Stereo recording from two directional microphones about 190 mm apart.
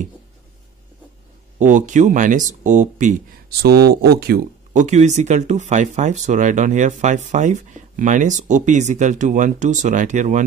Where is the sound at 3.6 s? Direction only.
55° right (ahead or behind).